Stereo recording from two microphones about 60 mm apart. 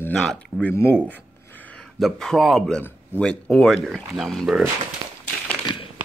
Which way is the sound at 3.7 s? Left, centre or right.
Centre.